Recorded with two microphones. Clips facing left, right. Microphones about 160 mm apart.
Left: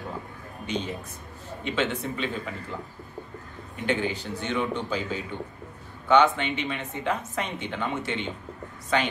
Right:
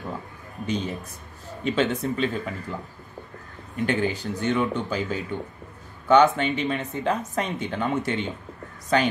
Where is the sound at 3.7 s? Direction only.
40° right (ahead or behind).